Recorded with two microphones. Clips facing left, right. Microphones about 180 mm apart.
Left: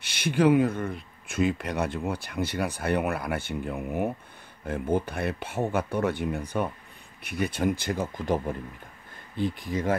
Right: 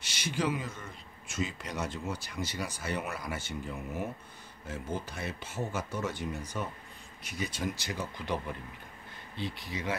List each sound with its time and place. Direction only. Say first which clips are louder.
0.0 s speech: left 10 dB; 60° left (ahead or behind)